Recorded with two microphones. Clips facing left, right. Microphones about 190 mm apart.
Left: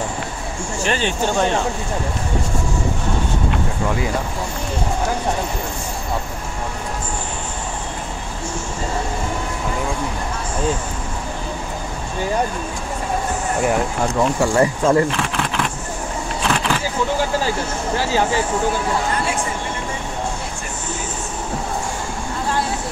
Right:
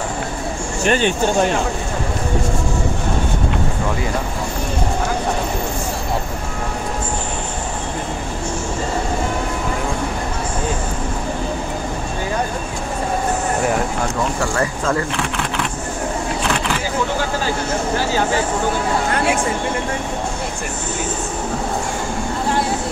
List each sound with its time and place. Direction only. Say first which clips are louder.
0.8 s speech: right 5 dB; 50° right (ahead or behind)
14.5 s speech: left 4 dB; 20° left (ahead or behind)